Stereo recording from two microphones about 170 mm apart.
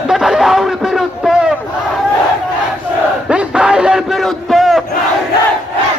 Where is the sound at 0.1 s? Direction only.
Centre (ahead or behind).